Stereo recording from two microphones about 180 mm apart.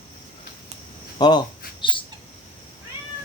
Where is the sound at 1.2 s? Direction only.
25° left (ahead or behind).